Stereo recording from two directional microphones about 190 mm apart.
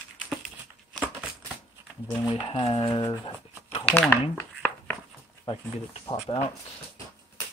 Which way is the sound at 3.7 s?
30° left (ahead or behind).